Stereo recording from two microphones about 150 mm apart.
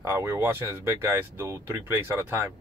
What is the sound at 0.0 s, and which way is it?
A man's voice, 20° right (ahead or behind).